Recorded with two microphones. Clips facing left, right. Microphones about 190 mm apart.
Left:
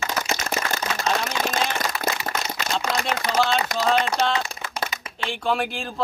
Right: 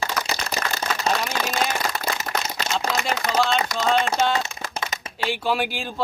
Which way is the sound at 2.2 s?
40° right (ahead or behind).